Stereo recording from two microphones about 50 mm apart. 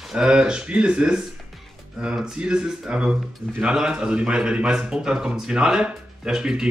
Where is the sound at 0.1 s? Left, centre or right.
Centre.